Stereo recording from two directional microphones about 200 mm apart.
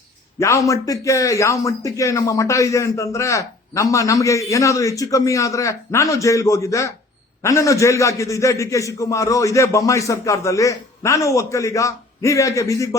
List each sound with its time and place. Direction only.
0.3 s a man's voice: 15° left (ahead or behind)